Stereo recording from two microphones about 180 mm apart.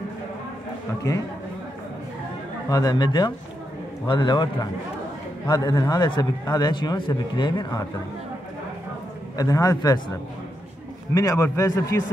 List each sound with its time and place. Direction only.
2.7 s a man's voice: 20° left (ahead or behind)
9.4 s a man's voice: 20° left (ahead or behind)
11.1 s a man's voice: 15° left (ahead or behind)